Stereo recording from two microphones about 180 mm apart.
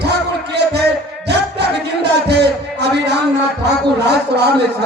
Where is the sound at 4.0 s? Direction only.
65° right (ahead or behind).